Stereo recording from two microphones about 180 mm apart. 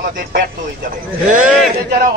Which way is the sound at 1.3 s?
5° right (ahead or behind).